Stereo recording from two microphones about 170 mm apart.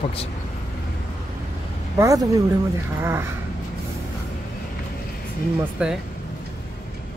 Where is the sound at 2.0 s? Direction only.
20° right (ahead or behind).